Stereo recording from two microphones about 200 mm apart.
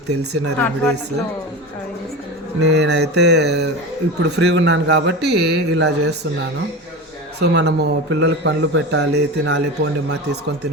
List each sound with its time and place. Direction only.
0.6 s speech: 10° left (ahead or behind)
2.6 s speech: 55° right (ahead or behind)
7.3 s speech: 55° right (ahead or behind)